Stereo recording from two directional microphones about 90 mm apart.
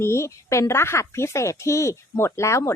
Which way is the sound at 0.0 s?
30° left (ahead or behind).